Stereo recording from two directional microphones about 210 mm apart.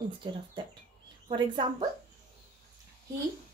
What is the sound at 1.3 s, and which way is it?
Speech, 20° right (ahead or behind).